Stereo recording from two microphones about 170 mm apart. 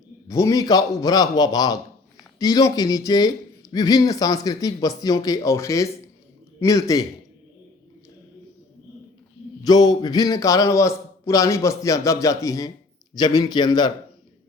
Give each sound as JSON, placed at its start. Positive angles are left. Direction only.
{"t": 0.3, "sound": "speech", "side_deg": 20}
{"t": 9.6, "sound": "speech", "side_deg": 25}